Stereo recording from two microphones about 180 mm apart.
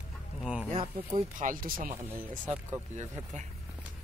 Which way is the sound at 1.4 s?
50° right (ahead or behind).